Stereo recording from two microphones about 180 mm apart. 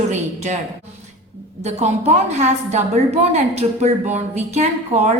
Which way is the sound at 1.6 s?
40° right (ahead or behind).